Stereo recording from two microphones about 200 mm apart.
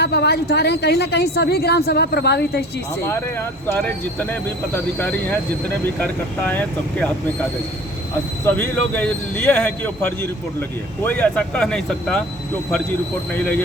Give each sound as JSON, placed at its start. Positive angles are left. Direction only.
{"t": 0.0, "sound": "a woman's voice", "side_deg": 55}
{"t": 3.1, "sound": "speech", "side_deg": 10}
{"t": 8.4, "sound": "speech", "side_deg": 10}
{"t": 13.3, "sound": "speech", "side_deg": 5}